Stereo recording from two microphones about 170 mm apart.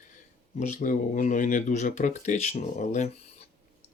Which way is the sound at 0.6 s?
50° left (ahead or behind).